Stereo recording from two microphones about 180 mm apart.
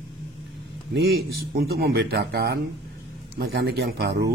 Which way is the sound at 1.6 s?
60° right (ahead or behind).